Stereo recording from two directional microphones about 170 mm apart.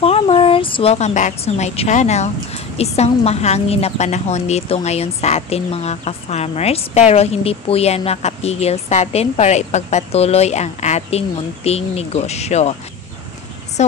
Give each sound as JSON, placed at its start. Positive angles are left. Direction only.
{"t": 0.0, "sound": "a woman's voice", "side_deg": 35}
{"t": 13.8, "sound": "a woman's voice", "side_deg": 40}